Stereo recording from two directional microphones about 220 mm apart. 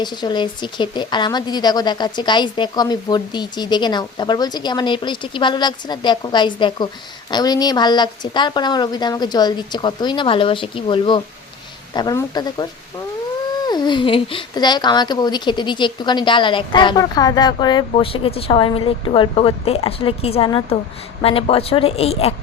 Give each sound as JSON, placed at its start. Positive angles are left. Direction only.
{"t": 0.0, "sound": "speech", "side_deg": 20}
{"t": 13.7, "sound": "speech", "side_deg": 20}